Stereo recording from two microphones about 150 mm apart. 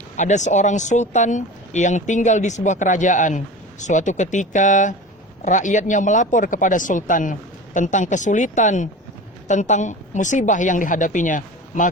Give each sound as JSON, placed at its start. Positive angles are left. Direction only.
{"t": 0.2, "sound": "speech", "side_deg": 50}